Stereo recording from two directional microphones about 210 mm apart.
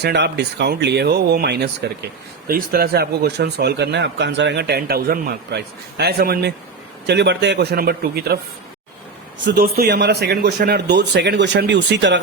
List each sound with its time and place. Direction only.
0.0 s speech: 55° right (ahead or behind)
9.4 s speech: 55° right (ahead or behind)